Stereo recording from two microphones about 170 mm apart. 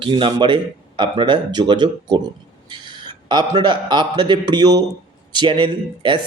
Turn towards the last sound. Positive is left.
turn(degrees=-30)  # may be behind; listen again after turning